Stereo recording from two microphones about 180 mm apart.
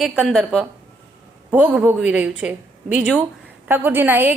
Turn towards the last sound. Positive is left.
turn(degrees=-10)  # may be behind; listen again after turning